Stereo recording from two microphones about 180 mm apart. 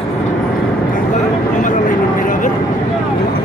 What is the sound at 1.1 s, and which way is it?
Vehicle, 45° left (ahead or behind).